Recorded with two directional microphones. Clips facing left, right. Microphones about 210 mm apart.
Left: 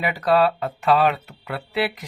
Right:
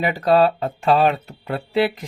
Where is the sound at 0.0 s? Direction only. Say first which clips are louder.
Right 3 dB; 30° right (ahead or behind).